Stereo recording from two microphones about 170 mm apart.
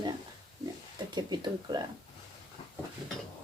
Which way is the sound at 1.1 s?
25° right (ahead or behind).